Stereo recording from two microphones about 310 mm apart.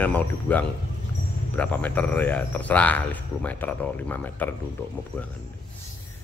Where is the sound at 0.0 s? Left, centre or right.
Centre.